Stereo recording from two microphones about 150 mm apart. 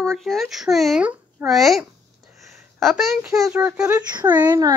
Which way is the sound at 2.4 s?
Centre (ahead or behind).